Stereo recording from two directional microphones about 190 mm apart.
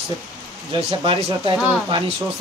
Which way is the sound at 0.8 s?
30° right (ahead or behind).